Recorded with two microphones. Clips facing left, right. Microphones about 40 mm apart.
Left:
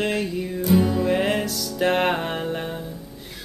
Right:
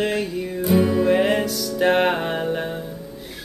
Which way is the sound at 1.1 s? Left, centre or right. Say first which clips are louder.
Right 3 dB; centre.